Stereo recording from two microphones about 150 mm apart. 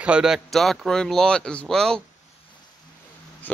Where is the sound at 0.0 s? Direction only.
5° right (ahead or behind).